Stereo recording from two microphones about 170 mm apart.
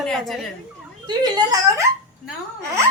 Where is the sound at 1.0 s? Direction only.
25° right (ahead or behind).